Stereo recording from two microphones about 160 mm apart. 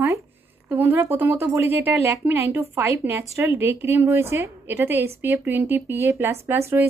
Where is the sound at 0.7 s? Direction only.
15° right (ahead or behind).